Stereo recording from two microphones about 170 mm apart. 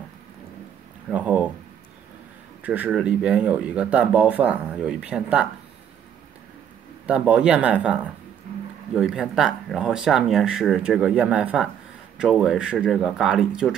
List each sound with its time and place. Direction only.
1.1 s speech: 10° right (ahead or behind)
2.6 s speech: 10° right (ahead or behind)
7.1 s speech: 5° right (ahead or behind)